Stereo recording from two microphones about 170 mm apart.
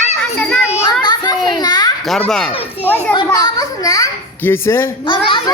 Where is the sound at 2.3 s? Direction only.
5° left (ahead or behind).